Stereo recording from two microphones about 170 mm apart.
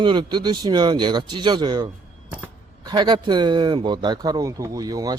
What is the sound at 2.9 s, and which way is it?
Speech, 25° right (ahead or behind).